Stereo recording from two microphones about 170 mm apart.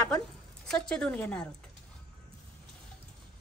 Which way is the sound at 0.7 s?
5° left (ahead or behind).